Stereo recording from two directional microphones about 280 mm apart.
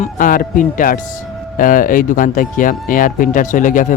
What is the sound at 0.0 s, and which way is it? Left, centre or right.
Speech, left.